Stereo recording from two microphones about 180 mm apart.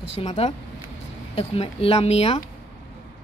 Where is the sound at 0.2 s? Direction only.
35° left (ahead or behind).